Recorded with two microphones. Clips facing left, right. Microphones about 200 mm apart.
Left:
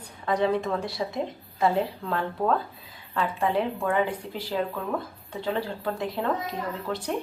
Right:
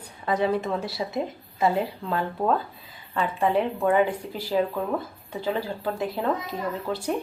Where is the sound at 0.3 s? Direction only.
5° right (ahead or behind).